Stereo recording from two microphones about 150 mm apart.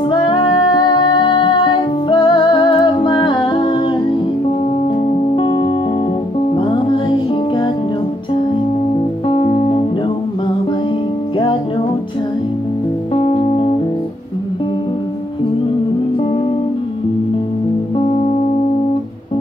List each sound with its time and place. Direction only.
0.1 s music: 35° left (ahead or behind)
5.3 s music: 30° left (ahead or behind)
9.3 s music: 35° left (ahead or behind)
13.1 s music: 35° left (ahead or behind)
17.9 s music: 35° left (ahead or behind)